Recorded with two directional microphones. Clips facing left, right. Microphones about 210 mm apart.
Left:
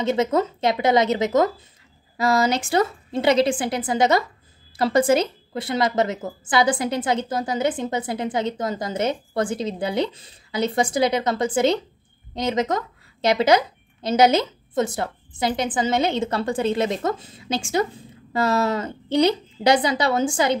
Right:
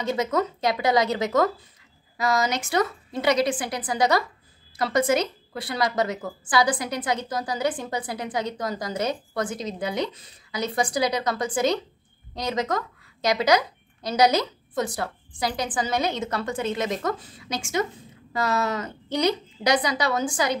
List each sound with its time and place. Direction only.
0.0 s a woman's voice: 25° left (ahead or behind)